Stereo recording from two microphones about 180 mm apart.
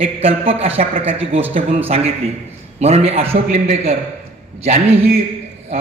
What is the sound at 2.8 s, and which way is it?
Speech, 35° right (ahead or behind).